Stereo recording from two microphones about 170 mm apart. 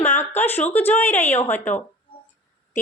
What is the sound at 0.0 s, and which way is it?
A woman's voice, 15° left (ahead or behind).